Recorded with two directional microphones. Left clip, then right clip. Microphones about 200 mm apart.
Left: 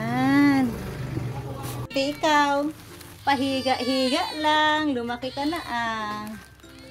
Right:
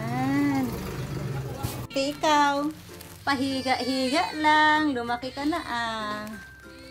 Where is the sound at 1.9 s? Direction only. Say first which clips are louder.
Left 1 dB; 5° left (ahead or behind).